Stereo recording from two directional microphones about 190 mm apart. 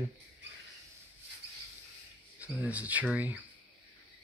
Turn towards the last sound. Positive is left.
turn(degrees=-10)  # may be behind; listen again after turning